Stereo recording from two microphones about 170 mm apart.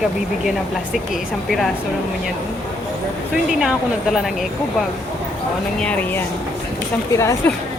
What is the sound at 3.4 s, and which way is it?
Speech, 5° right (ahead or behind).